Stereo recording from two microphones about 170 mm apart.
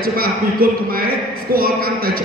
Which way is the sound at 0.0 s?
60° right (ahead or behind).